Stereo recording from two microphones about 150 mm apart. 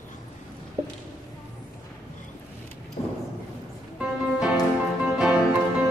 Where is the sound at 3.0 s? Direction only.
50° left (ahead or behind).